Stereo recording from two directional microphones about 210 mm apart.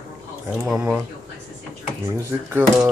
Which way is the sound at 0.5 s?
10° right (ahead or behind).